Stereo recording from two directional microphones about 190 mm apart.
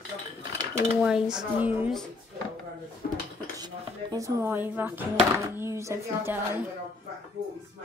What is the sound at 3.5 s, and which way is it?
Speech, 20° right (ahead or behind).